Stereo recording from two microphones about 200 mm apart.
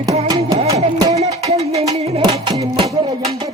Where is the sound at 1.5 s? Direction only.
25° right (ahead or behind).